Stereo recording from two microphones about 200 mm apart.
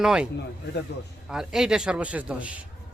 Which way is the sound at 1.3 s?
5° right (ahead or behind).